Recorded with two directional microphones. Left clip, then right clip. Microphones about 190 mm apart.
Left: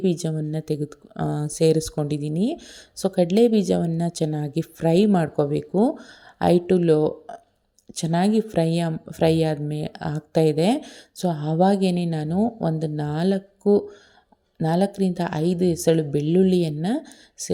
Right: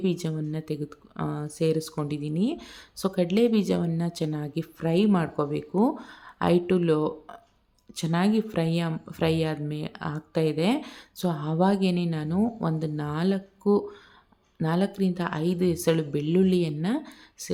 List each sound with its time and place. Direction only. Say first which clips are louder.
0.0 s speech: left 5 dB; 20° left (ahead or behind)